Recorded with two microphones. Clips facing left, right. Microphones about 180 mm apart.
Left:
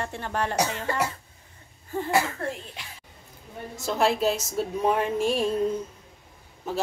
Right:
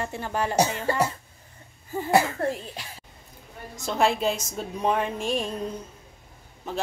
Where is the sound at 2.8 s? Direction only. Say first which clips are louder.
Right 2 dB; 40° right (ahead or behind).